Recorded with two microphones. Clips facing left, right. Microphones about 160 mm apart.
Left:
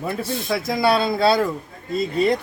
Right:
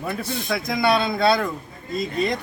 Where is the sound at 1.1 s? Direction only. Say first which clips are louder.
Left 2 dB; 30° left (ahead or behind).